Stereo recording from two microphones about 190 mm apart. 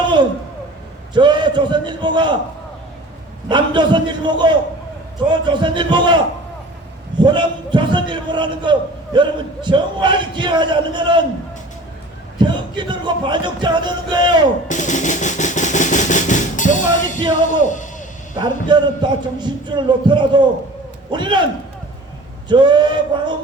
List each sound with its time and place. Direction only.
1.1 s a man's voice: 25° right (ahead or behind)
3.5 s a man's voice: 25° right (ahead or behind)
12.4 s a man's voice: 25° right (ahead or behind)
14.7 s drum: 40° left (ahead or behind)
17.5 s speech: 40° left (ahead or behind)
18.3 s a man's voice: 25° right (ahead or behind)
22.4 s a man's voice: 25° right (ahead or behind)